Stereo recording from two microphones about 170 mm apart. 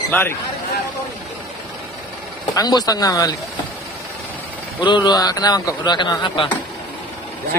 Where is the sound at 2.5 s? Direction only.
20° left (ahead or behind).